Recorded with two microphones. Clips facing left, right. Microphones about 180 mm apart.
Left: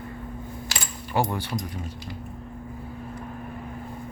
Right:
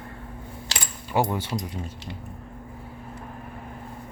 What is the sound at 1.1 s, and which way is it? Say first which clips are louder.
Speech: right 1 dB; 15° right (ahead or behind).